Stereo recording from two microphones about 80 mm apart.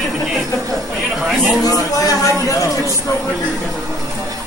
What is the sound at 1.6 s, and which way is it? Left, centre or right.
Speech, left.